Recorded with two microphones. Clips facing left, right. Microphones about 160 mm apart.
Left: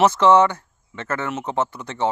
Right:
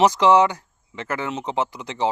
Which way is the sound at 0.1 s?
15° right (ahead or behind).